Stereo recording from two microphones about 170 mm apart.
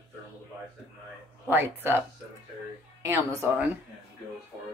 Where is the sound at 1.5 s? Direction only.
10° right (ahead or behind).